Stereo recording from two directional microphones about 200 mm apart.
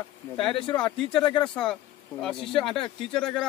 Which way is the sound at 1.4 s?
5° left (ahead or behind).